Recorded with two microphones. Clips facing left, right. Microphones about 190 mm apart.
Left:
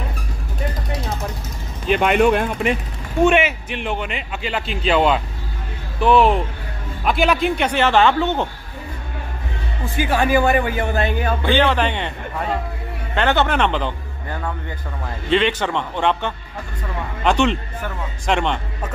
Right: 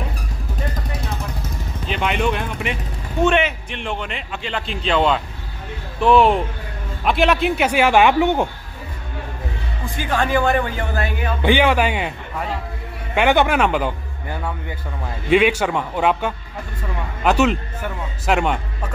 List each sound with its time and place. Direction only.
1.9 s speech: 50° left (ahead or behind)
3.3 s a man's voice: 5° left (ahead or behind); by 8.5 s 15° right (ahead or behind)
9.9 s speech: 10° left (ahead or behind)
11.4 s a man's voice: 10° right (ahead or behind)
13.1 s a man's voice: 10° right (ahead or behind)